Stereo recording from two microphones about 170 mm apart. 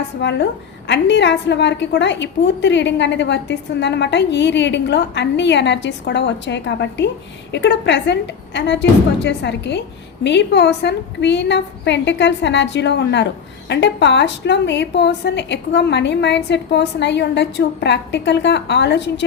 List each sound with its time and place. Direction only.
0.2 s a woman's voice: 90° left